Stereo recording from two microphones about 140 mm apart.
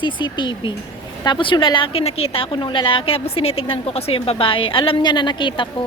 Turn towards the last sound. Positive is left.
turn(degrees=35)  # may be behind; listen again after turning